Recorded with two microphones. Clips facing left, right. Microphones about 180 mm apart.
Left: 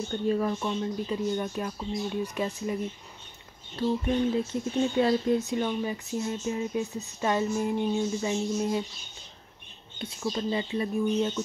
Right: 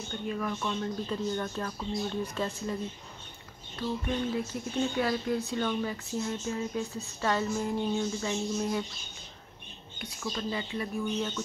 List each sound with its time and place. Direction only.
0.1 s speech: 30° left (ahead or behind)
0.7 s speech: 15° left (ahead or behind)
4.4 s speech: 25° left (ahead or behind)
9.9 s speech: 25° left (ahead or behind)